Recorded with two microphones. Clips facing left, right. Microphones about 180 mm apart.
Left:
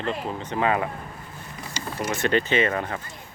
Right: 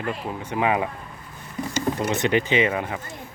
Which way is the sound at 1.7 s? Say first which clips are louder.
Right 6 dB; 50° right (ahead or behind).